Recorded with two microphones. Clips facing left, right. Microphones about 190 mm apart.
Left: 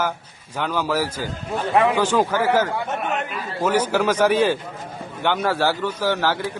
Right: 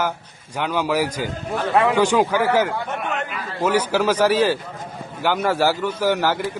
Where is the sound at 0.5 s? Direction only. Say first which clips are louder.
Right 1 dB; 10° right (ahead or behind).